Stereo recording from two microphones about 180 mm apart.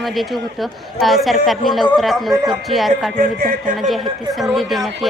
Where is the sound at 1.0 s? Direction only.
Centre (ahead or behind).